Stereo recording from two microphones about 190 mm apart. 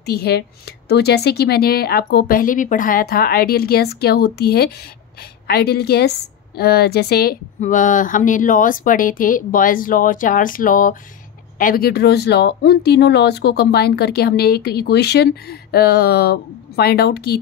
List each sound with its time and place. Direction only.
0.0 s a woman's voice: 60° left (ahead or behind)